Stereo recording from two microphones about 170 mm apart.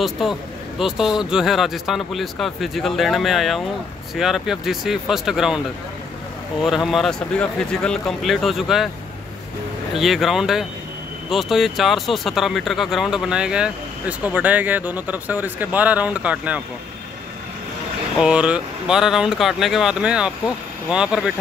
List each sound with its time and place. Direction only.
0.0 s speech: centre (ahead or behind)
6.6 s speech: centre (ahead or behind)
9.9 s speech: centre (ahead or behind)
18.2 s speech: 5° right (ahead or behind)